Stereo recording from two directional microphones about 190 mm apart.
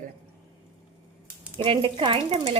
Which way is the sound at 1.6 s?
25° right (ahead or behind).